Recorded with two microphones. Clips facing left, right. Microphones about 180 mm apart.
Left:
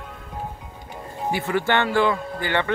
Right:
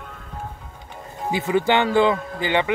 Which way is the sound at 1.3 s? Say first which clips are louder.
Right 3 dB; 20° right (ahead or behind).